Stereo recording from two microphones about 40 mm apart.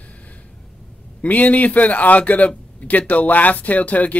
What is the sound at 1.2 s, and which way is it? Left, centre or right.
Speech, left.